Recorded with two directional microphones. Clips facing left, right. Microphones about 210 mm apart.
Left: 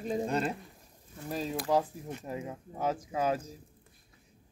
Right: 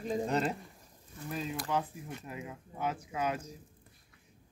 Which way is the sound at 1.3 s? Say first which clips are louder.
Left 5 dB; 35° left (ahead or behind).